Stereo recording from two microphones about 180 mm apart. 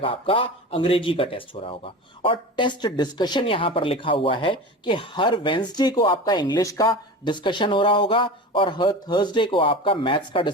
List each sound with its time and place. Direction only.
0.0 s speech: 30° left (ahead or behind)